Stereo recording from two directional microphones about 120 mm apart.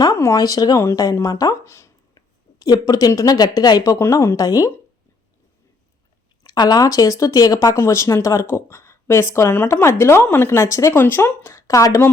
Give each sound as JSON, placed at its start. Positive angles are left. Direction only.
{"t": 0.0, "sound": "speech", "side_deg": 25}
{"t": 2.1, "sound": "a woman's voice", "side_deg": 35}
{"t": 6.4, "sound": "speech", "side_deg": 35}